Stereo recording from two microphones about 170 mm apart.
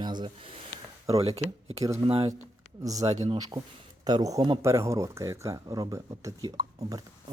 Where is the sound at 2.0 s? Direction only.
35° right (ahead or behind).